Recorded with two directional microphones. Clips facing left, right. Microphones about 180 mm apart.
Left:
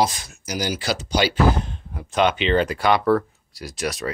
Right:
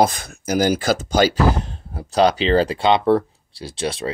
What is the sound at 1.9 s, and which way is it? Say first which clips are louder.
Speech: right 4 dB; 35° right (ahead or behind).